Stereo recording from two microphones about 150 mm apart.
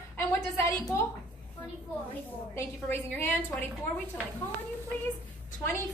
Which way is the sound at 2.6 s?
15° left (ahead or behind).